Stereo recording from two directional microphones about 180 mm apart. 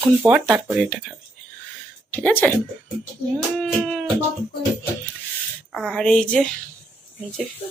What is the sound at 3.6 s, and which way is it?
Speech, 5° left (ahead or behind).